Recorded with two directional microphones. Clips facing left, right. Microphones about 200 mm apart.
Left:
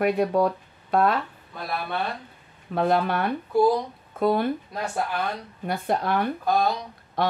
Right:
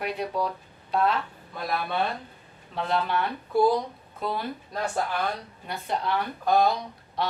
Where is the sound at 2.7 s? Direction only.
55° left (ahead or behind).